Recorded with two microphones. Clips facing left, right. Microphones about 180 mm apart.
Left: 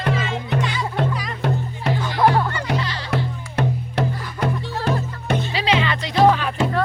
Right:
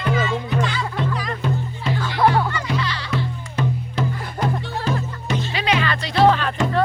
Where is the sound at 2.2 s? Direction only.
Centre (ahead or behind).